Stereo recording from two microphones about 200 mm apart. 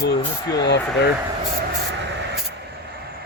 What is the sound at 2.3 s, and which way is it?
Vehicle, 55° right (ahead or behind).